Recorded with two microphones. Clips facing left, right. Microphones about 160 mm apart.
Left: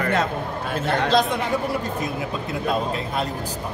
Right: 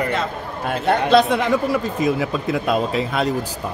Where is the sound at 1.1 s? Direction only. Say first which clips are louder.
Right 7 dB; 80° right.